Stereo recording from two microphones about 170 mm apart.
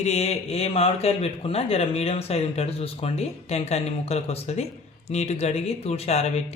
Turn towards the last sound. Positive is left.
turn(degrees=40)  # may be behind; listen again after turning